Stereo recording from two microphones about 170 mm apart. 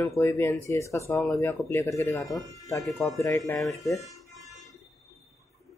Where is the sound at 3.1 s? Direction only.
20° left (ahead or behind).